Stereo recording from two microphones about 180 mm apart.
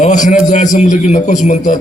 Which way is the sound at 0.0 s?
45° left (ahead or behind).